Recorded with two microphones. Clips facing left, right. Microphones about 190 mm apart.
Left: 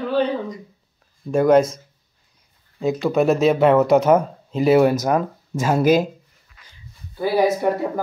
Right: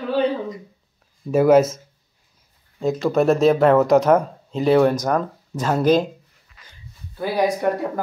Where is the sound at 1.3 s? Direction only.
5° right (ahead or behind).